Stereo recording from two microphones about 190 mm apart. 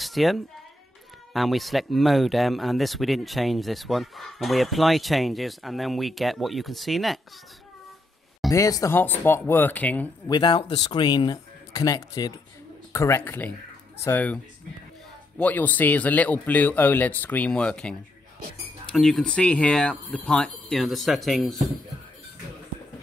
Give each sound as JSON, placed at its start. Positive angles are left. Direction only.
{"t": 0.0, "sound": "a sound", "side_deg": 0}
{"t": 1.3, "sound": "speech", "side_deg": 0}
{"t": 8.5, "sound": "speech", "side_deg": 20}
{"t": 10.3, "sound": "a man's voice", "side_deg": 20}